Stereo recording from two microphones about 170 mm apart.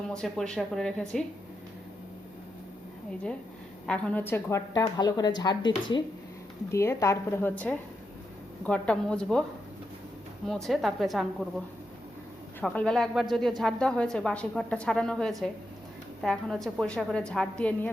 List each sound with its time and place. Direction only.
0.1 s a woman's voice: 5° left (ahead or behind)
3.8 s a woman's voice: 5° left (ahead or behind)
10.4 s a woman's voice: centre (ahead or behind)
12.5 s a woman's voice: 5° left (ahead or behind)